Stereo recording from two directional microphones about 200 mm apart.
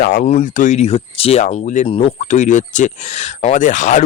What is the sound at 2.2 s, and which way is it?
Speech, 35° left (ahead or behind).